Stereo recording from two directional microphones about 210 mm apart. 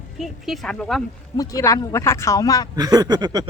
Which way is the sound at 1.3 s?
15° left (ahead or behind).